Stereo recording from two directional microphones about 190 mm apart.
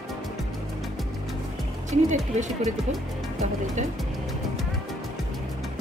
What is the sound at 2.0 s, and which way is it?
Speech, 40° right (ahead or behind).